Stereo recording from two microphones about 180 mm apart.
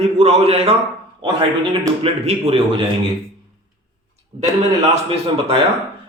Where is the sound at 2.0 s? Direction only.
35° right (ahead or behind).